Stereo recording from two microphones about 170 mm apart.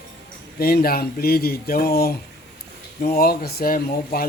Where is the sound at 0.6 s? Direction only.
60° left (ahead or behind).